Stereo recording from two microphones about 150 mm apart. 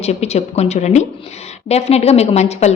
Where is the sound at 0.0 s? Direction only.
45° left (ahead or behind).